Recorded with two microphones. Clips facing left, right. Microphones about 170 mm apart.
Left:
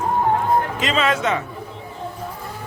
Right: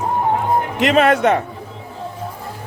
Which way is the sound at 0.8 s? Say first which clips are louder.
Right 7 dB; 65° right (ahead or behind).